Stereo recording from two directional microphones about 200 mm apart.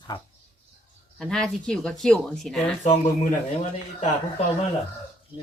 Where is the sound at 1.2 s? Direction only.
Centre (ahead or behind).